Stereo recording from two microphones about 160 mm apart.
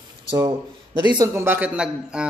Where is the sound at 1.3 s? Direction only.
10° right (ahead or behind).